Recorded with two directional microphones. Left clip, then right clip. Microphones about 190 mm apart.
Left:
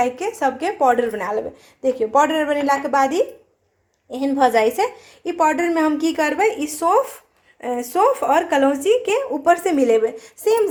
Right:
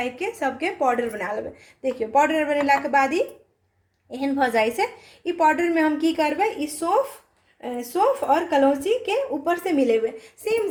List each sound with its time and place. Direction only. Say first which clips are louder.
0.0 s a woman's voice: left 6 dB; 15° left (ahead or behind)